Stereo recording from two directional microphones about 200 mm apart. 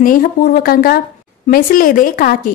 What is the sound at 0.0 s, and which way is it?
A woman's voice, 45° left (ahead or behind).